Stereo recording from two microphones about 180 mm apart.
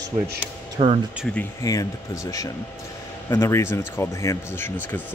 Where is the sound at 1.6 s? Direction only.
20° left (ahead or behind).